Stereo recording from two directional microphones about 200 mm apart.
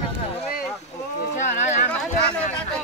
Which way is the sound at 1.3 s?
35° left (ahead or behind).